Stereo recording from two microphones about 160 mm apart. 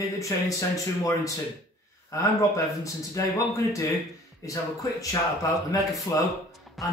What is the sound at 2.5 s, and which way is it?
Speech, 20° left (ahead or behind).